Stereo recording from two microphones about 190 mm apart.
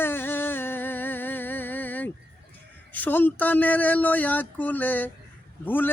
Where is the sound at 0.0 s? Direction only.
10° left (ahead or behind).